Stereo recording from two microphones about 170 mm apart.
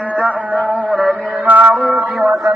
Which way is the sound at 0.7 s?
5° right (ahead or behind).